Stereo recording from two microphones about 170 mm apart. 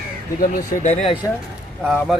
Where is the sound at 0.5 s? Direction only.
40° left (ahead or behind).